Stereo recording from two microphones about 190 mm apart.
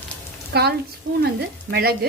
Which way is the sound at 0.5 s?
60° right (ahead or behind).